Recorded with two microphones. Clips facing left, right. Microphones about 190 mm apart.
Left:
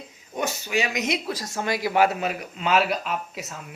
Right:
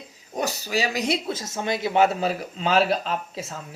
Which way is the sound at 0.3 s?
35° right (ahead or behind).